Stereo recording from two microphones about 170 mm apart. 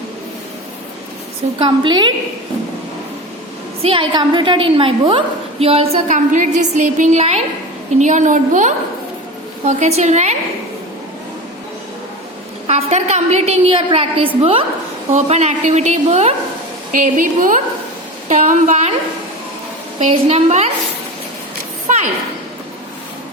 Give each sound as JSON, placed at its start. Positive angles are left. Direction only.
{"t": 1.5, "sound": "a woman's voice", "side_deg": -25}
{"t": 3.8, "sound": "a woman's voice", "side_deg": -30}
{"t": 12.6, "sound": "a woman's voice", "side_deg": -40}
{"t": 16.9, "sound": "a woman's voice", "side_deg": -50}
{"t": 20.0, "sound": "a woman's voice", "side_deg": -40}
{"t": 21.9, "sound": "a sound", "side_deg": -50}